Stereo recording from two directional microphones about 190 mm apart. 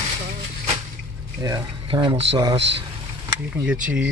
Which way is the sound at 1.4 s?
20° right (ahead or behind).